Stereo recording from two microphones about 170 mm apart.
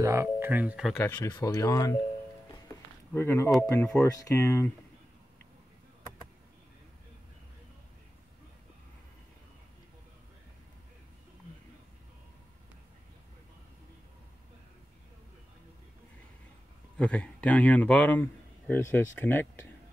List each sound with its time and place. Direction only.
0.0 s speech: 15° right (ahead or behind)
0.9 s speech: 15° left (ahead or behind)
3.2 s speech: 15° left (ahead or behind)
16.9 s a man's voice: 5° left (ahead or behind)